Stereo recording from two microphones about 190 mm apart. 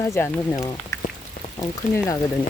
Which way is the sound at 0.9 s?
15° left (ahead or behind).